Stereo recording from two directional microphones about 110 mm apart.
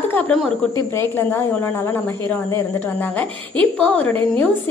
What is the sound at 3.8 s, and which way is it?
Speech, 15° left (ahead or behind).